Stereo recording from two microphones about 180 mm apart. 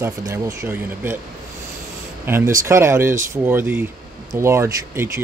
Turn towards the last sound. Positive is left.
turn(degrees=-15)  # may be behind; listen again after turning